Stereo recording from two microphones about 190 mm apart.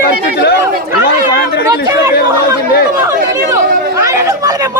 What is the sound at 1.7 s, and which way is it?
Chatter, 15° right (ahead or behind).